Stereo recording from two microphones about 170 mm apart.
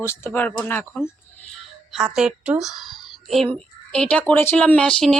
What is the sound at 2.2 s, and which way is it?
Speech, 5° right (ahead or behind).